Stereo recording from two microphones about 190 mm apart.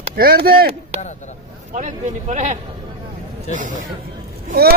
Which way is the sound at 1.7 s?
40° right (ahead or behind).